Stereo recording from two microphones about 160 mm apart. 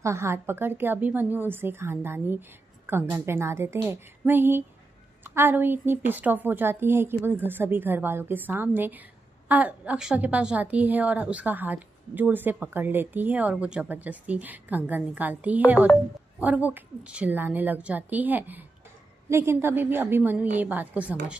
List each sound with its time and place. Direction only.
0.0 s a woman's voice: 15° right (ahead or behind)